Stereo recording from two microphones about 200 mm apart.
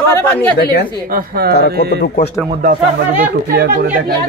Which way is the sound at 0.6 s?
55° left (ahead or behind).